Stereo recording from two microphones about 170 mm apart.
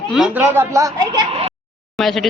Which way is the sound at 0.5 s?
15° right (ahead or behind).